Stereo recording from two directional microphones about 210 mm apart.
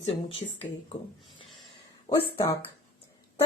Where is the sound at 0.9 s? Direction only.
25° left (ahead or behind).